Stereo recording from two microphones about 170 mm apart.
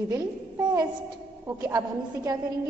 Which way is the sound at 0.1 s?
25° right (ahead or behind).